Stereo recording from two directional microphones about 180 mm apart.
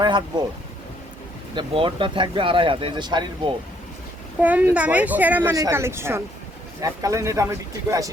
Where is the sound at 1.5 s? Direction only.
30° right (ahead or behind).